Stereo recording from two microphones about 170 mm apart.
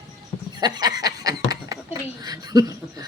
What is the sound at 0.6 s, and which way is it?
Chuckle, 25° right (ahead or behind).